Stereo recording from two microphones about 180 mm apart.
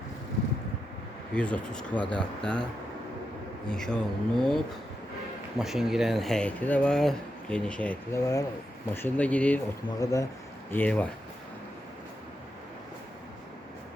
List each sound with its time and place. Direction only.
1.3 s speech: 5° left (ahead or behind)
3.7 s speech: 5° left (ahead or behind)
8.2 s speech: 20° left (ahead or behind)